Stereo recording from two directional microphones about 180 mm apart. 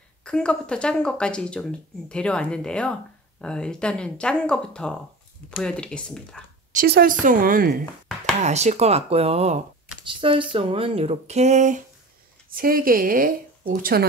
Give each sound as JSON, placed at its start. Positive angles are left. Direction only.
{"t": 0.2, "sound": "speech", "side_deg": 5}
{"t": 6.7, "sound": "speech", "side_deg": -55}
{"t": 8.4, "sound": "speech", "side_deg": -40}
{"t": 12.4, "sound": "speech", "side_deg": -50}